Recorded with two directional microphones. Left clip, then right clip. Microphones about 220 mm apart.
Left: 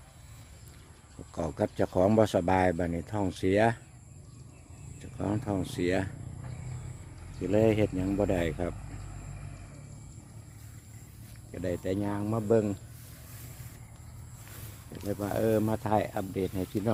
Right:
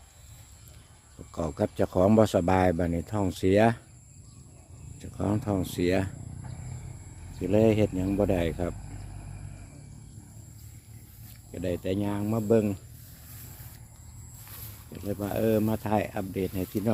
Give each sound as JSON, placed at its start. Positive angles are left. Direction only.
{"t": 1.3, "sound": "speech", "side_deg": -10}
{"t": 4.9, "sound": "speech", "side_deg": -20}
{"t": 7.4, "sound": "speech", "side_deg": -10}
{"t": 11.5, "sound": "speech", "side_deg": -10}
{"t": 15.0, "sound": "speech", "side_deg": 0}